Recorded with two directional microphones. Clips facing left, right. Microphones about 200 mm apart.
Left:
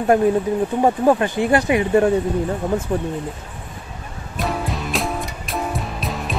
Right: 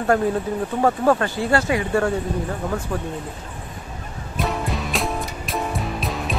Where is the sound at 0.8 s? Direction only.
15° left (ahead or behind).